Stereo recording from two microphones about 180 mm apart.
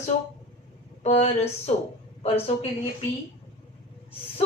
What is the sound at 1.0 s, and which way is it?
Speech, 35° left (ahead or behind).